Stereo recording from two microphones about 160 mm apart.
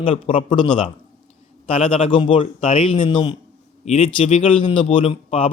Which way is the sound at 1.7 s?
35° left (ahead or behind).